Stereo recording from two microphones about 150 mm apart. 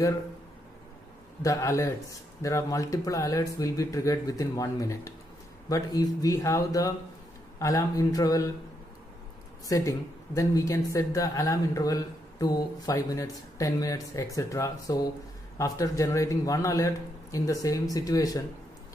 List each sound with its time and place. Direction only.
1.4 s a woman's voice: 20° left (ahead or behind)
9.7 s a woman's voice: 20° left (ahead or behind)